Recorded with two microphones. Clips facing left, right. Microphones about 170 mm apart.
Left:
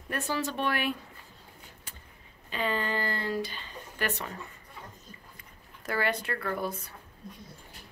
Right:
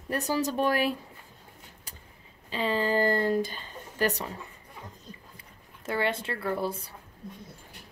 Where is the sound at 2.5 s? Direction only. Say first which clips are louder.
Right 4 dB; 30° right (ahead or behind).